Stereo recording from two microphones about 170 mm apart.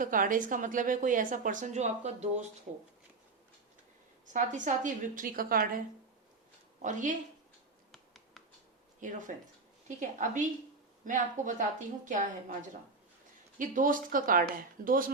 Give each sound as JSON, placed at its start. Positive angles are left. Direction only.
{"t": 0.0, "sound": "a woman's voice", "side_deg": -50}
{"t": 4.3, "sound": "a woman's voice", "side_deg": -50}
{"t": 6.8, "sound": "a woman's voice", "side_deg": -50}
{"t": 7.9, "sound": "finger snapping", "side_deg": 0}
{"t": 9.0, "sound": "a woman's voice", "side_deg": -50}